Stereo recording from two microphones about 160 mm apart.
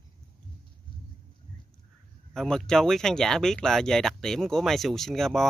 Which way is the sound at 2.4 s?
5° left (ahead or behind).